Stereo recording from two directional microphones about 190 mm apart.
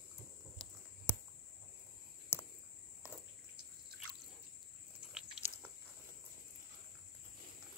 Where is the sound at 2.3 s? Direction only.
10° left (ahead or behind).